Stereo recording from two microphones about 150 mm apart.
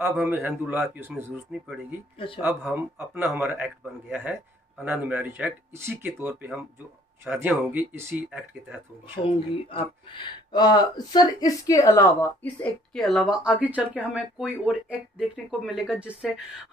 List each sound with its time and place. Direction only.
0.0 s a man's voice: 15° right (ahead or behind)
2.1 s speech: 35° left (ahead or behind)
2.4 s a man's voice: 15° right (ahead or behind)
9.7 s speech: 35° left (ahead or behind); by 12.7 s 15° left (ahead or behind)
12.9 s speech: centre (ahead or behind)